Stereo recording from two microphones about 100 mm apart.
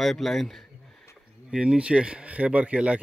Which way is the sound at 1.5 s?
10° right (ahead or behind).